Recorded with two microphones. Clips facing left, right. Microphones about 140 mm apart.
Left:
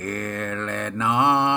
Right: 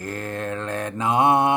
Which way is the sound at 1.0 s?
35° right (ahead or behind).